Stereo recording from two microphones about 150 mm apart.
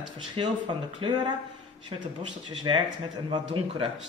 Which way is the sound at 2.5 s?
30° right (ahead or behind).